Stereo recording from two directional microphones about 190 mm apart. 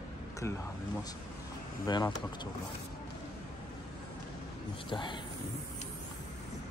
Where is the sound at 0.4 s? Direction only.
15° left (ahead or behind).